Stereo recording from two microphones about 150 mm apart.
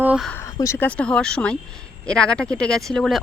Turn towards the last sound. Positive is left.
turn(degrees=0)  # may be behind; listen again after turning